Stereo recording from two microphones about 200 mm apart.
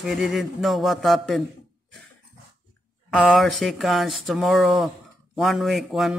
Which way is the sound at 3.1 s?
5° left (ahead or behind).